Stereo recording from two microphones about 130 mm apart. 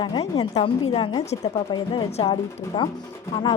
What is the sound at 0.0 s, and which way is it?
A woman's voice, 35° left (ahead or behind).